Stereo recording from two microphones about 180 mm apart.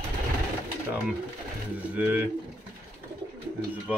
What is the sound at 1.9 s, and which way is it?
Speech, 10° right (ahead or behind).